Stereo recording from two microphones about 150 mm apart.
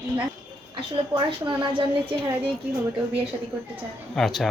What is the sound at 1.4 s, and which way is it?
Speech, 30° right (ahead or behind).